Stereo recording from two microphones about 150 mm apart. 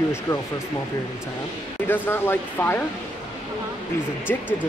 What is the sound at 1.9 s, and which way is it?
Speech, 15° left (ahead or behind).